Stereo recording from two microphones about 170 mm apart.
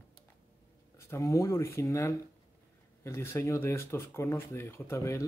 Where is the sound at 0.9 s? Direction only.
15° left (ahead or behind).